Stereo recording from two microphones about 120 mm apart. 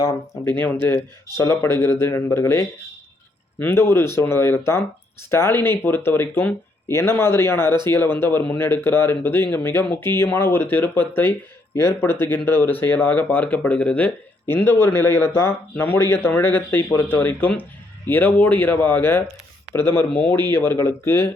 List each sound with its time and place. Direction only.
0.4 s speech: 15° left (ahead or behind)